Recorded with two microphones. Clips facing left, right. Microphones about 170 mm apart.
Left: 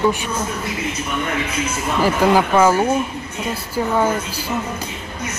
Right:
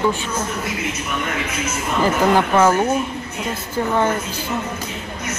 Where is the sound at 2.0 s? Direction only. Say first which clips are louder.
Left 1 dB; 10° left (ahead or behind).